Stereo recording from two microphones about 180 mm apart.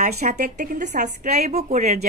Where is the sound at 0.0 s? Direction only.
40° right (ahead or behind).